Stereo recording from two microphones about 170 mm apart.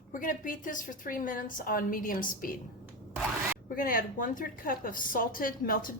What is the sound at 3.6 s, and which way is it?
A woman's voice, 55° left (ahead or behind).